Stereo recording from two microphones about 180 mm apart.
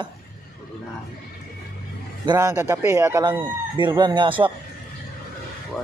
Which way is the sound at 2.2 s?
15° right (ahead or behind).